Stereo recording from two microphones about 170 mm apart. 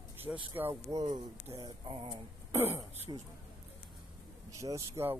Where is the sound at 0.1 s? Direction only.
10° right (ahead or behind).